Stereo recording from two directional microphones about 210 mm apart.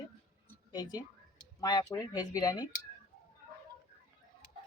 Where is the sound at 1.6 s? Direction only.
15° left (ahead or behind).